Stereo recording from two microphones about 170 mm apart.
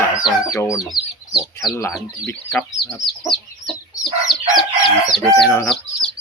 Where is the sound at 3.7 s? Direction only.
Centre (ahead or behind).